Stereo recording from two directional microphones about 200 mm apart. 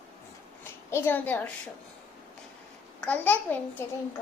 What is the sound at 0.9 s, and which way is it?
Speech, 10° left (ahead or behind).